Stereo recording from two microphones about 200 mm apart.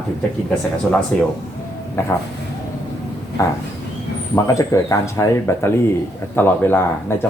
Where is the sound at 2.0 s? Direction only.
15° left (ahead or behind).